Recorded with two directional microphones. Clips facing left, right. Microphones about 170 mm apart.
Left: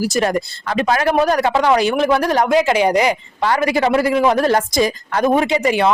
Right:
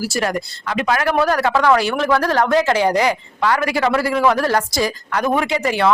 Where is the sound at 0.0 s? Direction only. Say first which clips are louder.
Left 4 dB; 25° left (ahead or behind).